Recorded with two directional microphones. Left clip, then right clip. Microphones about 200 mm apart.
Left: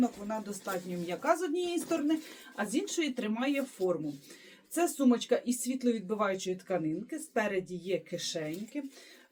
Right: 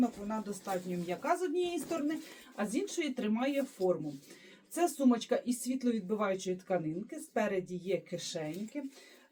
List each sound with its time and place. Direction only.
0.6 s speech: 20° left (ahead or behind)